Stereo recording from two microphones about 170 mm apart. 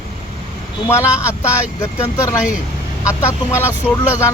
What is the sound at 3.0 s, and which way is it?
Speech, 15° left (ahead or behind).